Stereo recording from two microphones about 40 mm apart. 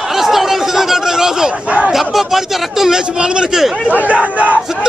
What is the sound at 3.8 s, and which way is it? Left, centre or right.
Speech, right.